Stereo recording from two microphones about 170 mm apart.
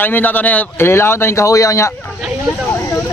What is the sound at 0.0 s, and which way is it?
Music, 10° left (ahead or behind).